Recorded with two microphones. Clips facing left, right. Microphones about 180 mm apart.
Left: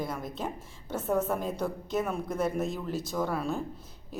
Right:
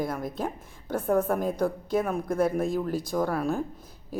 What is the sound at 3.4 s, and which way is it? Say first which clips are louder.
Speech: right 4 dB; 10° right (ahead or behind).